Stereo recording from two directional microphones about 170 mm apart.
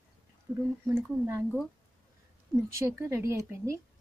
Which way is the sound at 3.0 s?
15° right (ahead or behind).